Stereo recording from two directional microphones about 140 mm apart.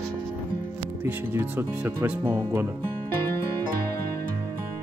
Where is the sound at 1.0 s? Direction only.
15° right (ahead or behind).